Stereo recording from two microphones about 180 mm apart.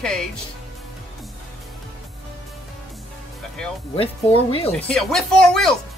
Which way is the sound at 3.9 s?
30° left (ahead or behind).